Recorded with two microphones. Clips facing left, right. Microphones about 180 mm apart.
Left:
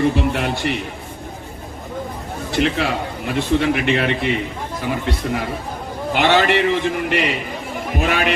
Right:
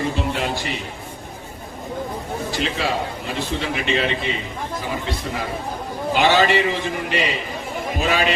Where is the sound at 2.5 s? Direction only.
60° left (ahead or behind).